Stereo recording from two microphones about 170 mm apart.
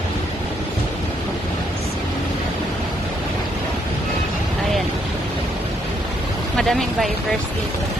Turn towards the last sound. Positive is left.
turn(degrees=0)  # may be behind; listen again after turning